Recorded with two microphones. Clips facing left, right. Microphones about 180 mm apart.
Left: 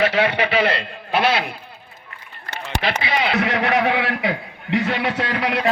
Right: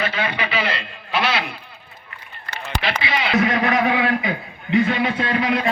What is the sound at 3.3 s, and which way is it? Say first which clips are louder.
A man's voice: right 4 dB; 70° left (ahead or behind).